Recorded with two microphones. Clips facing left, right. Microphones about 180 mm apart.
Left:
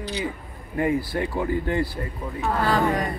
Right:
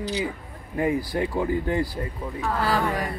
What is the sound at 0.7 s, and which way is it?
Speech, 20° right (ahead or behind).